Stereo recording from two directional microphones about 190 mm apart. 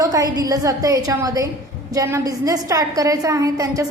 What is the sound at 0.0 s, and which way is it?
A woman's voice, 20° right (ahead or behind).